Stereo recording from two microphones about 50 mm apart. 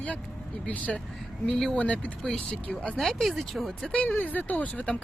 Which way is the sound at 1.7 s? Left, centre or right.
Left.